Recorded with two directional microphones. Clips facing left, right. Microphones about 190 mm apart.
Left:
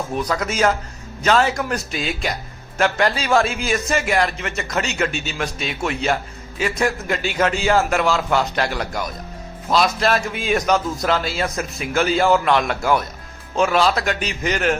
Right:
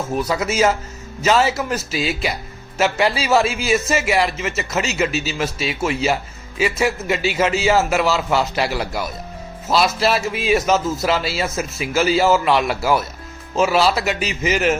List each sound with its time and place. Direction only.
0.1 s a man's voice: 5° right (ahead or behind)